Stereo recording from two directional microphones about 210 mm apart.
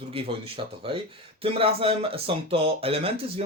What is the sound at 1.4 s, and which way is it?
Speech, 25° right (ahead or behind).